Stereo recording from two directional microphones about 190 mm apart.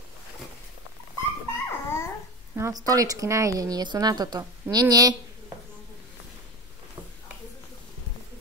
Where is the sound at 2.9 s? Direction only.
20° right (ahead or behind).